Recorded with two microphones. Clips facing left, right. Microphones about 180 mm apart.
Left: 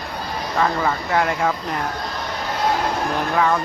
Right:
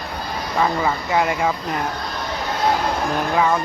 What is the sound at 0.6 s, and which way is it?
Speech, 5° right (ahead or behind).